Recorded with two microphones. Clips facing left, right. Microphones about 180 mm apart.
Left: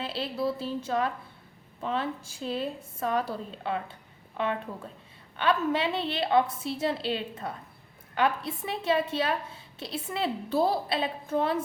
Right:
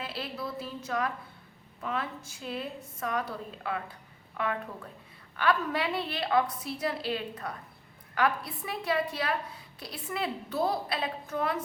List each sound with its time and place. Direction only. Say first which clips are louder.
0.0 s a woman's voice: left 6 dB; 30° left (ahead or behind)